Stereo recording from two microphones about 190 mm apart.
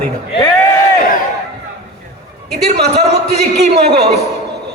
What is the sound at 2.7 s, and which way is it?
A man's voice, 60° right (ahead or behind).